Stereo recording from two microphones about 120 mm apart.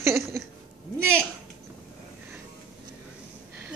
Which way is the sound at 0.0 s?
25° right (ahead or behind).